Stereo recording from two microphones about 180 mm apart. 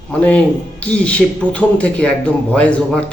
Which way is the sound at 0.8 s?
5° left (ahead or behind).